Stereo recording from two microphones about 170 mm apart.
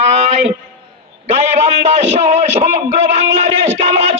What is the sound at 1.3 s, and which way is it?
A man's voice, 40° right (ahead or behind).